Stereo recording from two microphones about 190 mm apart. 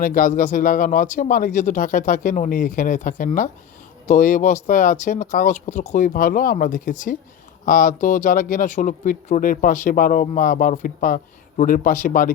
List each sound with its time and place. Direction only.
0.0 s speech: 45° left (ahead or behind)